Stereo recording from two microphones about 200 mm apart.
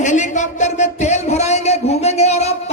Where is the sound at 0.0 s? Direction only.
35° left (ahead or behind).